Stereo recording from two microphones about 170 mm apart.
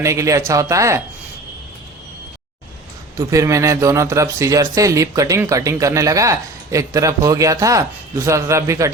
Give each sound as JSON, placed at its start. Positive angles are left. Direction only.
{"t": 0.0, "sound": "speech", "side_deg": -20}
{"t": 3.2, "sound": "speech", "side_deg": -20}